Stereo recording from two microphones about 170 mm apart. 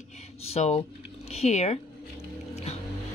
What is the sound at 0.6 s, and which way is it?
Speech, 40° left (ahead or behind).